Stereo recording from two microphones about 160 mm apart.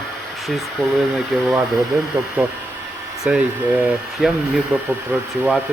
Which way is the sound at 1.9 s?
15° right (ahead or behind).